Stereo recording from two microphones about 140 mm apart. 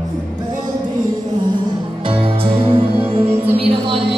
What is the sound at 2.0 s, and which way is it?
Music, 40° right (ahead or behind).